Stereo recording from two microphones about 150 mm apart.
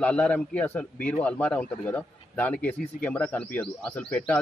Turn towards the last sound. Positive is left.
turn(degrees=10)  # may be behind; listen again after turning